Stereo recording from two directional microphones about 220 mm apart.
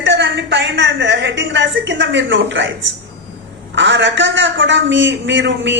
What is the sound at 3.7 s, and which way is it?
A man's voice, 55° right (ahead or behind).